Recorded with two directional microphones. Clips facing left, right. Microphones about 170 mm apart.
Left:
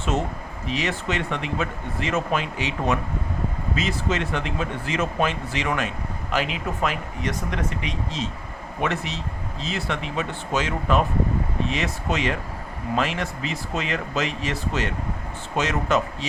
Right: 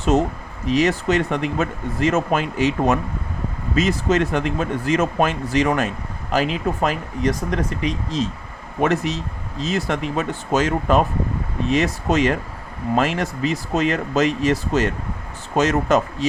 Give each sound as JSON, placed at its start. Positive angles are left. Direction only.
{"t": 0.0, "sound": "speech", "side_deg": -40}